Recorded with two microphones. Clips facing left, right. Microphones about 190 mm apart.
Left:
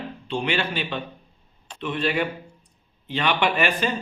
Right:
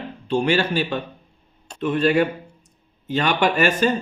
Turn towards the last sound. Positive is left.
turn(degrees=-45)  # may be behind; listen again after turning